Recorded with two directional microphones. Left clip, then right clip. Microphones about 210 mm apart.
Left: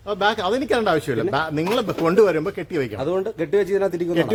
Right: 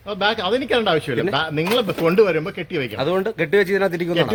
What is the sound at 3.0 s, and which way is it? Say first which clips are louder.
Speech: right 6 dB; 35° right (ahead or behind).